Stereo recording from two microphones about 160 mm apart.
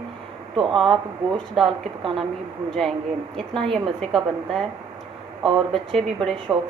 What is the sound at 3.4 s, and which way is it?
A woman's voice, centre (ahead or behind).